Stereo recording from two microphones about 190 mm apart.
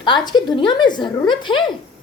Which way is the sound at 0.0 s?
25° left (ahead or behind).